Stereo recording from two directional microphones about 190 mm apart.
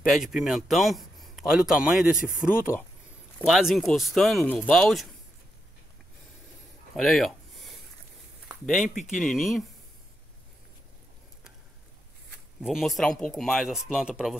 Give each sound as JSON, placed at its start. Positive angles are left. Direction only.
{"t": 0.0, "sound": "a man's voice", "side_deg": 0}
{"t": 7.0, "sound": "a sound", "side_deg": 0}
{"t": 8.6, "sound": "a man's voice", "side_deg": 0}
{"t": 12.3, "sound": "a man's voice", "side_deg": 0}